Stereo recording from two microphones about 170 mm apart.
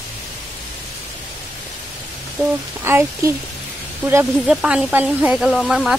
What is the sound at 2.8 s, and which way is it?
Speech, 15° right (ahead or behind).